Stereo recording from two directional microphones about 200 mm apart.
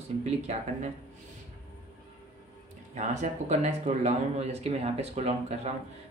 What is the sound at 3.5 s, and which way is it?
Speech, 35° right (ahead or behind).